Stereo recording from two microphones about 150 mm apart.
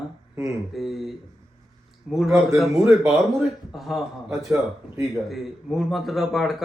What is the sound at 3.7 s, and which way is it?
Speech, centre (ahead or behind).